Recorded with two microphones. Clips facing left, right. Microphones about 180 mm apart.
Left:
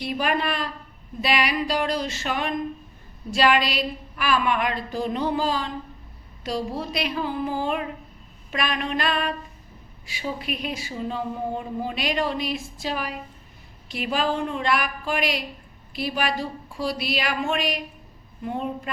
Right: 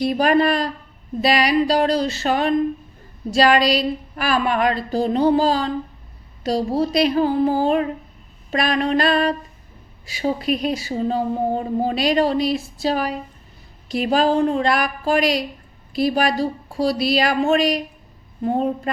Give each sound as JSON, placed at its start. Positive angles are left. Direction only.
{"t": 0.0, "sound": "speech", "side_deg": -40}